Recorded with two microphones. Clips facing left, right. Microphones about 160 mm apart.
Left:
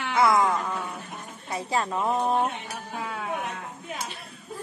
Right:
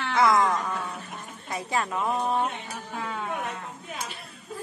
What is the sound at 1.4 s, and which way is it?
Speech, 30° left (ahead or behind).